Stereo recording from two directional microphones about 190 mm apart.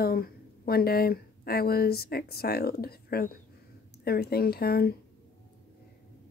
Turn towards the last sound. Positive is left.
turn(degrees=55)  # may be behind; listen again after turning